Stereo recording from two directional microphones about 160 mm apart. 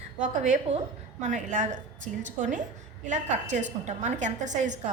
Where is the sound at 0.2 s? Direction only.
50° right (ahead or behind).